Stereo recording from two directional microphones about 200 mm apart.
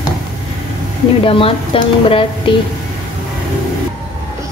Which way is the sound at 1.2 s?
25° left (ahead or behind).